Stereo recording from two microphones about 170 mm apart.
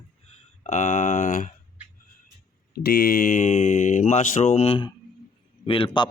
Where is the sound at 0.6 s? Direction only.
45° left (ahead or behind).